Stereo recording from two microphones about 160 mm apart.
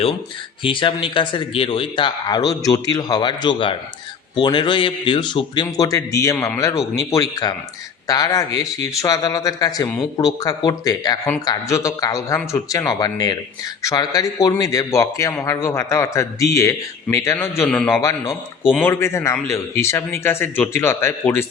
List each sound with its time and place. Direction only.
0.6 s a man's voice: 30° left (ahead or behind); by 18.0 s 5° left (ahead or behind)
18.0 s a man's voice: 20° left (ahead or behind)